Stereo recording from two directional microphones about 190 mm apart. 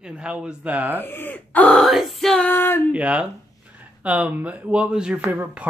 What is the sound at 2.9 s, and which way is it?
Speech, 5° right (ahead or behind).